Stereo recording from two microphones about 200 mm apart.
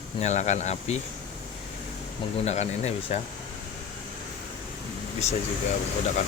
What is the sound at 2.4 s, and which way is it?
Speech, 35° left (ahead or behind).